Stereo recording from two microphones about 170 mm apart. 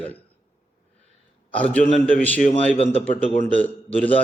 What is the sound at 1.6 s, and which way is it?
Speech, 5° left (ahead or behind).